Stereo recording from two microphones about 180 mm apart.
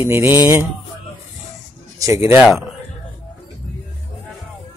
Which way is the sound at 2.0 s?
15° right (ahead or behind).